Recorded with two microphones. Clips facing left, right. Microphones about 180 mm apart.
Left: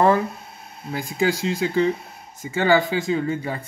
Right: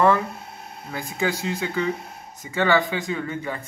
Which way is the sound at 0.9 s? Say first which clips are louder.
Left 4 dB; 35° left (ahead or behind).